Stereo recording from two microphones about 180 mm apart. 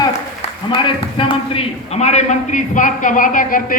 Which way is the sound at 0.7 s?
30° left (ahead or behind).